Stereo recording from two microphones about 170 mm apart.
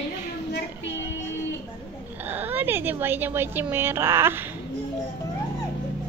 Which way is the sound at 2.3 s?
10° right (ahead or behind).